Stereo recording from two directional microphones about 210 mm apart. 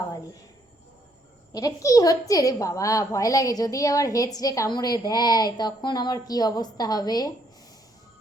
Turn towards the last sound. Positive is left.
turn(degrees=20)  # may be behind; listen again after turning